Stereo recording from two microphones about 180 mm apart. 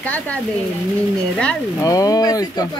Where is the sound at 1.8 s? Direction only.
20° left (ahead or behind).